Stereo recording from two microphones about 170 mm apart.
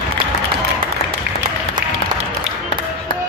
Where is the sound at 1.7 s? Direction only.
55° right (ahead or behind).